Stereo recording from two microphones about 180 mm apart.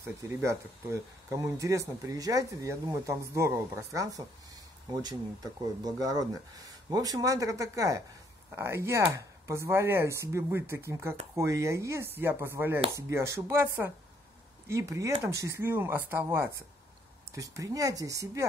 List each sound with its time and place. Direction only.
0.0 s speech: 15° right (ahead or behind)